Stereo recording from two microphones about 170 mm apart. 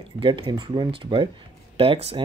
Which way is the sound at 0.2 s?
30° right (ahead or behind).